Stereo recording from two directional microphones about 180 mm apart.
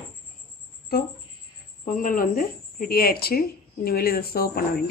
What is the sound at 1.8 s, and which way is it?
Speech, 50° left (ahead or behind).